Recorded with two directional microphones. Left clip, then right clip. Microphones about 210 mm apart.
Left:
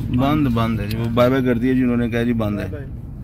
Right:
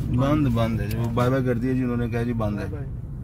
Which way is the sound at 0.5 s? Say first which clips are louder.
Left 4 dB; 10° left (ahead or behind).